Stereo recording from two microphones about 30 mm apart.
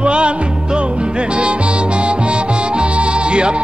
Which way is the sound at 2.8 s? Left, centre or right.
Right.